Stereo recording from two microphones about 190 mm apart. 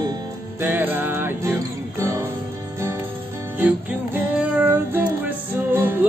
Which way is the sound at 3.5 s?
10° right (ahead or behind).